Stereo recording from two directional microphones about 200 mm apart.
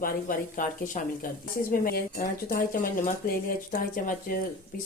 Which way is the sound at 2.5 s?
45° left (ahead or behind).